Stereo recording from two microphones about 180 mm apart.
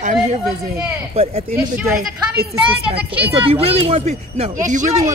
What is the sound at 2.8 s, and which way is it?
Speech, 10° right (ahead or behind).